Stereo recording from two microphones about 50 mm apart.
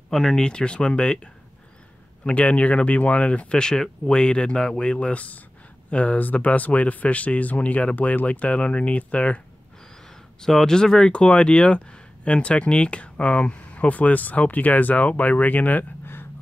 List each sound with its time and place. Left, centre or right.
0.1 s speech: centre; by 9.4 s left
10.4 s speech: centre; by 15.8 s left